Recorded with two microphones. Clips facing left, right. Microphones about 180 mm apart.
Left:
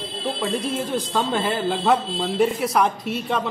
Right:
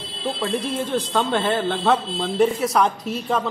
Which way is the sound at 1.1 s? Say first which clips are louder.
Right 2 dB; 5° left (ahead or behind).